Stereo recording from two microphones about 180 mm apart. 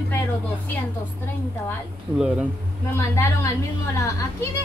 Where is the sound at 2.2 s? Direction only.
5° right (ahead or behind).